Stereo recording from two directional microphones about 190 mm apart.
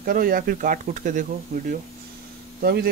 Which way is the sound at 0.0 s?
50° right (ahead or behind).